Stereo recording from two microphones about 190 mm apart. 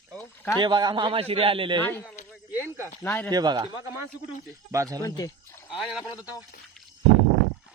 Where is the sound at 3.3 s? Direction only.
20° right (ahead or behind).